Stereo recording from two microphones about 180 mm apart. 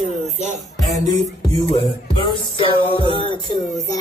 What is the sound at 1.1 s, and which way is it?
Music, 20° left (ahead or behind).